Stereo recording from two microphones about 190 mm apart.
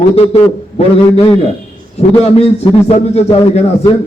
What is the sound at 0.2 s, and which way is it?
A man's voice, 30° left (ahead or behind).